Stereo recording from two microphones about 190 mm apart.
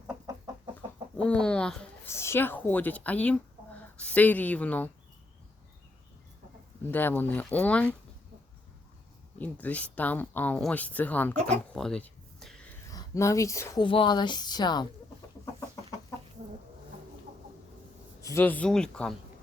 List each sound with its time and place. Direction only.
0.3 s chicken: 20° right (ahead or behind)
1.1 s a woman's voice: 5° left (ahead or behind)
6.9 s speech: 10° left (ahead or behind)
9.4 s speech: 10° left (ahead or behind)
11.7 s a sound: 5° left (ahead or behind)
12.9 s speech: 15° left (ahead or behind)
13.8 s speech: 25° left (ahead or behind)
15.7 s chicken: 15° left (ahead or behind)
18.2 s speech: 15° left (ahead or behind)